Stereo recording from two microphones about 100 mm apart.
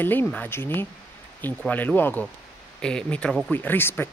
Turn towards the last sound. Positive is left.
turn(degrees=20)  # may be behind; listen again after turning